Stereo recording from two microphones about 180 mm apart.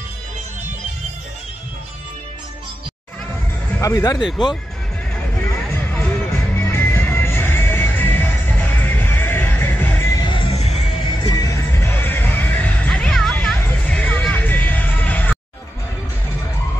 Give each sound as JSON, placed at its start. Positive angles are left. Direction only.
{"t": 3.8, "sound": "speech", "side_deg": 20}
{"t": 6.5, "sound": "music", "side_deg": 10}
{"t": 11.1, "sound": "music", "side_deg": 20}